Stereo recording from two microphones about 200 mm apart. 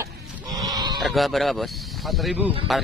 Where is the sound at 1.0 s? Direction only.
Centre (ahead or behind).